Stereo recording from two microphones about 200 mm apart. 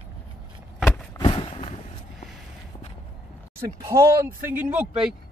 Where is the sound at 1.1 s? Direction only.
25° left (ahead or behind).